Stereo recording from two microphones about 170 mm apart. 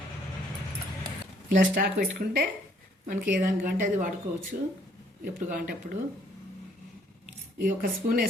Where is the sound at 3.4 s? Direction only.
55° right (ahead or behind).